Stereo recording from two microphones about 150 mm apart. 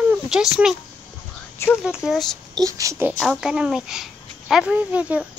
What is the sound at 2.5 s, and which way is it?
Speech, 20° right (ahead or behind).